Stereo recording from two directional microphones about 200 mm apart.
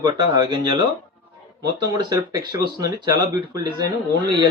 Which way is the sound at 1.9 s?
20° right (ahead or behind).